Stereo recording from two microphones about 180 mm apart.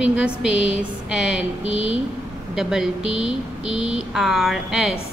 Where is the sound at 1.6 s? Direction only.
30° left (ahead or behind).